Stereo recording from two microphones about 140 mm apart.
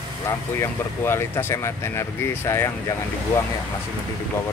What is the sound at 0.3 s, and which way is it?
Speech, 20° left (ahead or behind).